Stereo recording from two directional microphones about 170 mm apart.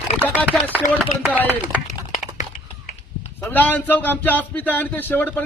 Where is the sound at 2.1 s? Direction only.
45° left (ahead or behind).